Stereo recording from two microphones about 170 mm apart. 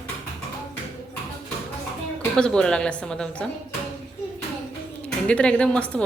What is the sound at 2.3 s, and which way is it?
A woman's voice, 5° left (ahead or behind).